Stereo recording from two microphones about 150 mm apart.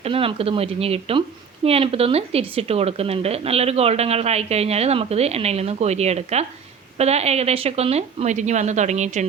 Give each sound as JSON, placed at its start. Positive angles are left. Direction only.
{"t": 0.0, "sound": "speech", "side_deg": -40}